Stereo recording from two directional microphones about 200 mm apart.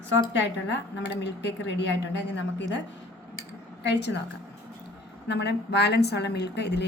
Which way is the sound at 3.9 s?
60° left (ahead or behind).